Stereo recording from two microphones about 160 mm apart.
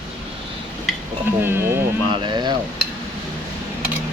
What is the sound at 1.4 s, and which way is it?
Speech, 15° right (ahead or behind).